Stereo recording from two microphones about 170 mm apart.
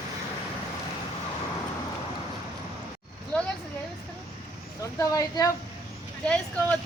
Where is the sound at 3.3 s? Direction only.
5° left (ahead or behind).